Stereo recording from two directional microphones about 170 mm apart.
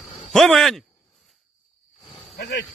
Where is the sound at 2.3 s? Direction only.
85° left.